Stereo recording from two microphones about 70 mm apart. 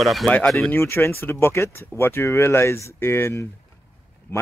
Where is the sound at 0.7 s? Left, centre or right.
Left.